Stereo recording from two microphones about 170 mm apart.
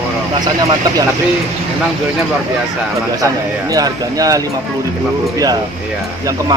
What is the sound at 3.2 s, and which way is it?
A man's voice, 20° right (ahead or behind).